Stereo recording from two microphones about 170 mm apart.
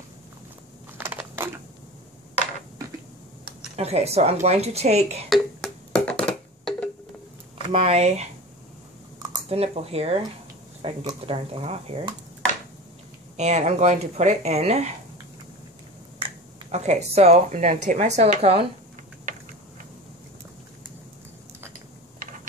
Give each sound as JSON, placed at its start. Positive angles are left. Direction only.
{"t": 0.9, "sound": "crushing", "side_deg": -10}
{"t": 3.7, "sound": "speech", "side_deg": -40}
{"t": 5.3, "sound": "a sound", "side_deg": 5}
{"t": 7.7, "sound": "speech", "side_deg": -35}
{"t": 9.5, "sound": "speech", "side_deg": -35}
{"t": 13.4, "sound": "speech", "side_deg": -40}
{"t": 16.7, "sound": "speech", "side_deg": -40}
{"t": 19.3, "sound": "a sound", "side_deg": -55}